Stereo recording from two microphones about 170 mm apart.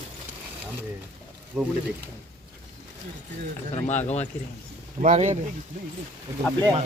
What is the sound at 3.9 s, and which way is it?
Speech, 40° left (ahead or behind).